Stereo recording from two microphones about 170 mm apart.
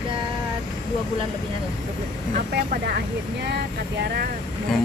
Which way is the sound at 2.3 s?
60° right (ahead or behind).